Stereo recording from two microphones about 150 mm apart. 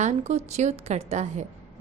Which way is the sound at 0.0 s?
50° right (ahead or behind).